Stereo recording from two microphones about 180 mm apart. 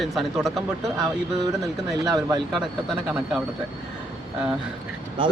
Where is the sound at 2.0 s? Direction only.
20° right (ahead or behind).